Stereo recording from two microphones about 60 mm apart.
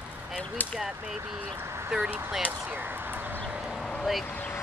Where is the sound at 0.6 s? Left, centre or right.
Left.